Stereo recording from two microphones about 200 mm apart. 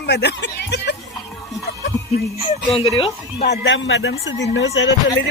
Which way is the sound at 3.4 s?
60° left (ahead or behind).